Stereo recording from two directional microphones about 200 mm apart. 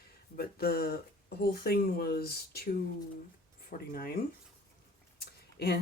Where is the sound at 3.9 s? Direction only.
45° left (ahead or behind).